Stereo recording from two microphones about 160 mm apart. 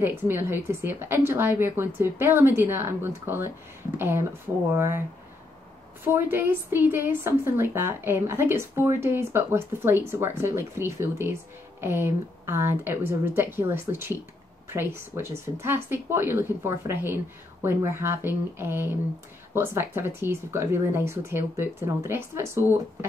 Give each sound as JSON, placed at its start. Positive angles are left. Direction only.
{"t": 0.0, "sound": "a woman's voice", "side_deg": -15}
{"t": 6.0, "sound": "a woman's voice", "side_deg": -15}